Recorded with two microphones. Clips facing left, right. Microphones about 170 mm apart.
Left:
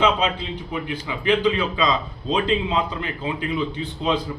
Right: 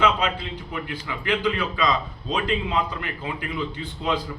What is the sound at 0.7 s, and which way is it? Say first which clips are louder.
A man's voice: left 4 dB; 20° left (ahead or behind).